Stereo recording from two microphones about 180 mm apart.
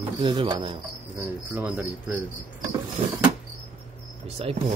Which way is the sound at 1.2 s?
10° right (ahead or behind).